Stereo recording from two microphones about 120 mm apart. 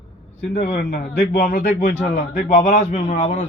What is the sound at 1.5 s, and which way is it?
A man's voice, 90° left.